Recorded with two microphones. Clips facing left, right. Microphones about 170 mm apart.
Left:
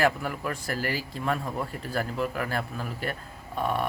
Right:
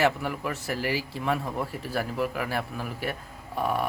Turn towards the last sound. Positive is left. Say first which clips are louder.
# right 1 dB
turn(degrees=-10)  # may be behind; listen again after turning